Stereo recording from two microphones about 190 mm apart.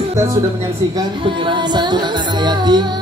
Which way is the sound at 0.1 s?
15° right (ahead or behind).